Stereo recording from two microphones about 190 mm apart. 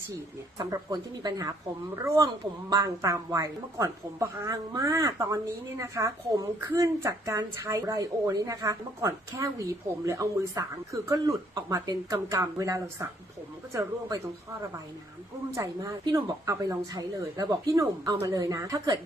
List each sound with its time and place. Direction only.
0.6 s a woman's voice: 20° right (ahead or behind)
15.5 s a woman's voice: 15° right (ahead or behind)